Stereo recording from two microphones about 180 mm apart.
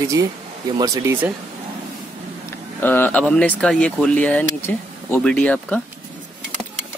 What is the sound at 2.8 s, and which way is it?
Speech, 10° left (ahead or behind).